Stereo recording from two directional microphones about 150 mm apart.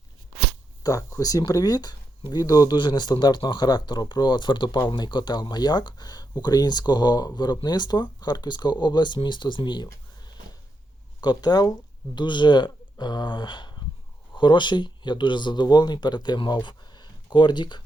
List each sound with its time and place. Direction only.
0.8 s speech: 20° left (ahead or behind)